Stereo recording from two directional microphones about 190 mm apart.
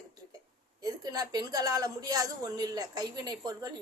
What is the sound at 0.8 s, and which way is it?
A woman's voice, 20° right (ahead or behind).